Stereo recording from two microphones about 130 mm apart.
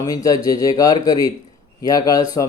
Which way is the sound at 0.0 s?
25° left (ahead or behind).